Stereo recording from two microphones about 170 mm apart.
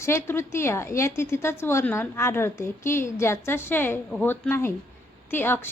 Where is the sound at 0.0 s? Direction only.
15° left (ahead or behind).